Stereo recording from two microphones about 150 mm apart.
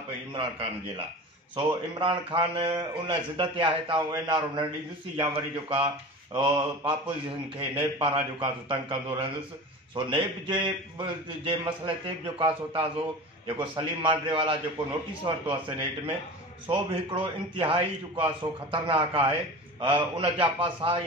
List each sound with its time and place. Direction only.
0.3 s speech: 35° right (ahead or behind)